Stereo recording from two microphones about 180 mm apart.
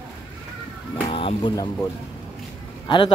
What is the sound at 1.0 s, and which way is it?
Speech, 30° left (ahead or behind).